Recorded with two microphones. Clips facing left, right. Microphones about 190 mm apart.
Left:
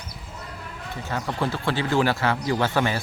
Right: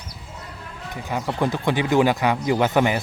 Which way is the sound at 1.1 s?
10° right (ahead or behind).